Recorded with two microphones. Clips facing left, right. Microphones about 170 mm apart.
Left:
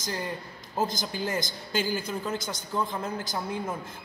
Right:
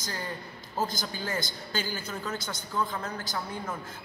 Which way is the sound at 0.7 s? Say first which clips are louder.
Left 3 dB; 15° left (ahead or behind).